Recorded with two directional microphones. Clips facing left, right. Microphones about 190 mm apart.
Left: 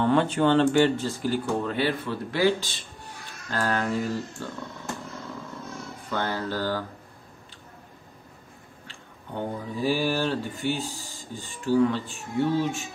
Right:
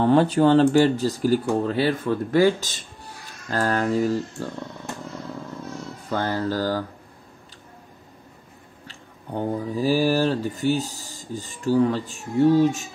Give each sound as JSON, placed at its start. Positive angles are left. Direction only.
{"t": 0.0, "sound": "speech", "side_deg": -35}
{"t": 6.0, "sound": "speech", "side_deg": -40}
{"t": 8.8, "sound": "speech", "side_deg": -40}